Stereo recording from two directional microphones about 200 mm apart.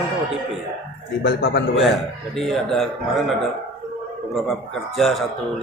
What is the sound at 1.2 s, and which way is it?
Speech, 55° left (ahead or behind).